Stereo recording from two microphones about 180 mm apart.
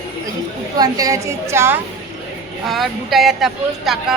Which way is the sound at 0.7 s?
20° right (ahead or behind).